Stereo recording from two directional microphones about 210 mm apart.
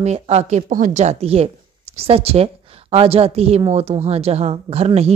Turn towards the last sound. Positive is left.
turn(degrees=-30)  # may be behind; listen again after turning